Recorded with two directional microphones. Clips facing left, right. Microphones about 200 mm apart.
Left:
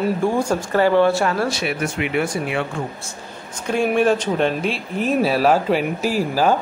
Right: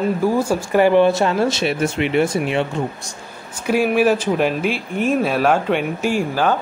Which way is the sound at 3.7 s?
5° right (ahead or behind).